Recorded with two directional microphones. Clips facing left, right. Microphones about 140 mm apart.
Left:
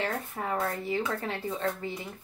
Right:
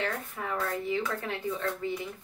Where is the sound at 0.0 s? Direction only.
35° left (ahead or behind).